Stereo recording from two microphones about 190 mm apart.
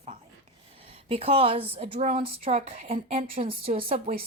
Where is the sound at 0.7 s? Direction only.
30° right (ahead or behind).